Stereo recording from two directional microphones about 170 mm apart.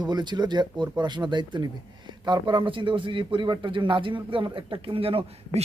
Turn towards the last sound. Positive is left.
turn(degrees=-35)  # may be behind; listen again after turning